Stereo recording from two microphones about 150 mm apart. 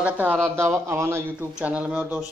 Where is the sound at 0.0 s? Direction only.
10° right (ahead or behind).